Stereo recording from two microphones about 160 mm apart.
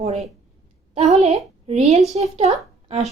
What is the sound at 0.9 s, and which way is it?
A woman's voice, 45° right (ahead or behind).